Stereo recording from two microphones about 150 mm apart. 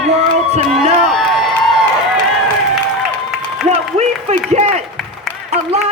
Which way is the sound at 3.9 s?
45° right (ahead or behind).